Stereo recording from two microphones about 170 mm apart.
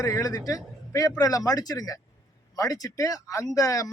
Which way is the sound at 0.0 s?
20° left (ahead or behind).